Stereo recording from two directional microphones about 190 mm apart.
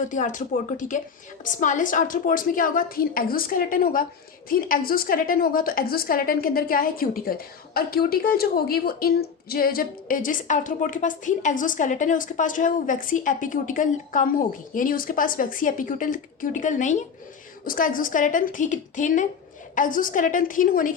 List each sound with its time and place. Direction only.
0.1 s a woman's voice: 40° left (ahead or behind)